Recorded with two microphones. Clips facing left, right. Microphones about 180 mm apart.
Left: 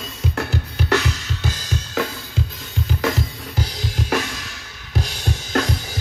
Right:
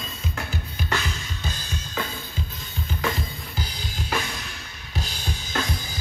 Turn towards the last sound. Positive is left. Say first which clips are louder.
# left 7 dB
turn(degrees=70)  # may be behind; listen again after turning